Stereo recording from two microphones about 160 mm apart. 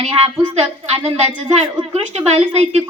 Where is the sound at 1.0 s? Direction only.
40° right (ahead or behind).